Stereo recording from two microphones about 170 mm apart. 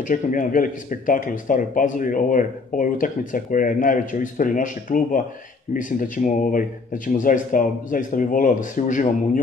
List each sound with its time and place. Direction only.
0.0 s speech: 50° left (ahead or behind)